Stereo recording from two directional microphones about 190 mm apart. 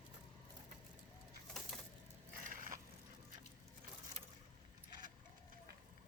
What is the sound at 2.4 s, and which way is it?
Crushing, 45° right (ahead or behind).